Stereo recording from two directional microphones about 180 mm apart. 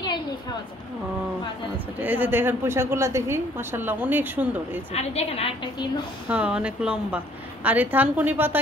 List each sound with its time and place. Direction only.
2.0 s a woman's voice: 10° right (ahead or behind)
4.9 s a woman's voice: 35° left (ahead or behind)
6.2 s a woman's voice: 5° right (ahead or behind)